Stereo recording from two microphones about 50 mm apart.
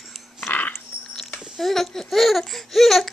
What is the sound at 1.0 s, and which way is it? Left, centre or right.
Dog, centre.